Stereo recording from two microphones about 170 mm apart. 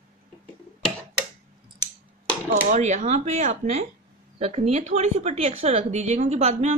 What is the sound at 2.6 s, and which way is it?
A woman's voice, 45° right (ahead or behind).